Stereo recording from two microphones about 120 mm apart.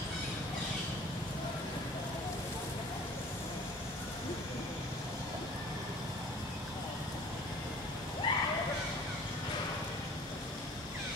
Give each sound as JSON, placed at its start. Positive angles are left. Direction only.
{"t": 8.3, "sound": "water", "side_deg": 40}